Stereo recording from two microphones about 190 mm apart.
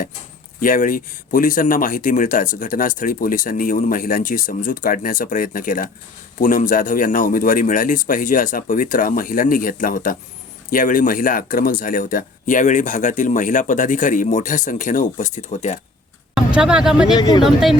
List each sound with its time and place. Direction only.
0.6 s speech: 45° left (ahead or behind)
16.6 s speech: 5° right (ahead or behind)
17.2 s speech: 20° left (ahead or behind)
17.4 s speech: centre (ahead or behind)